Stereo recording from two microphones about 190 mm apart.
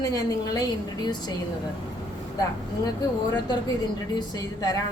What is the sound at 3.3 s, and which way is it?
A woman's voice, 20° left (ahead or behind).